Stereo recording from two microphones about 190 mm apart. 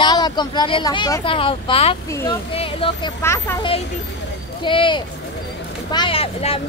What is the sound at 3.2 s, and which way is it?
Speech, 15° left (ahead or behind).